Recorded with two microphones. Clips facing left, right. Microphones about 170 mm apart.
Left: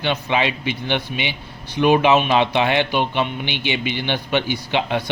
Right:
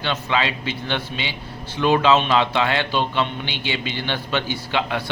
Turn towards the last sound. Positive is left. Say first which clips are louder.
# left 2 dB
turn(degrees=20)  # may be behind; listen again after turning